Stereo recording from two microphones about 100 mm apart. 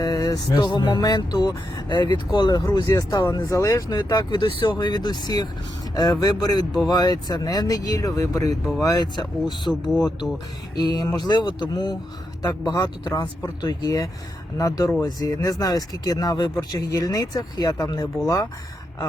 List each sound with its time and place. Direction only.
0.0 s vehicle: 40° left (ahead or behind)
2.7 s speech: 40° left (ahead or behind)
4.8 s vehicle: 50° left (ahead or behind)
5.9 s speech: 40° left (ahead or behind)
8.8 s vehicle: 40° left (ahead or behind)
12.4 s speech: 35° left (ahead or behind)